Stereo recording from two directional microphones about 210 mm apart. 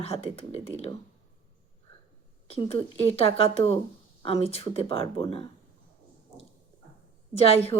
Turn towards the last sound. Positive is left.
turn(degrees=30)  # may be behind; listen again after turning